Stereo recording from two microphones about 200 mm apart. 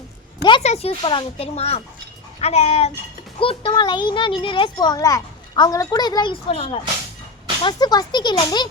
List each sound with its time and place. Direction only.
0.4 s a child's voice: 30° left (ahead or behind)